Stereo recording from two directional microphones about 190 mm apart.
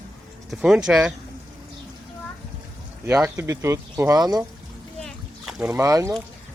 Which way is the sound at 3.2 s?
15° right (ahead or behind).